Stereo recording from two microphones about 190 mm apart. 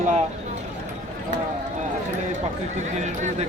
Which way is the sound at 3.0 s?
40° right (ahead or behind).